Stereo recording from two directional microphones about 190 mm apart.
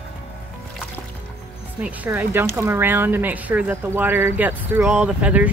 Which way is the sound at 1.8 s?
10° right (ahead or behind).